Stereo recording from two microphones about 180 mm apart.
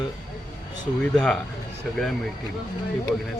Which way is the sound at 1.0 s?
5° left (ahead or behind).